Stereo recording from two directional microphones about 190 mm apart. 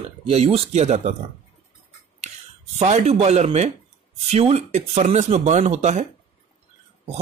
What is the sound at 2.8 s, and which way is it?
Speech, 35° right (ahead or behind).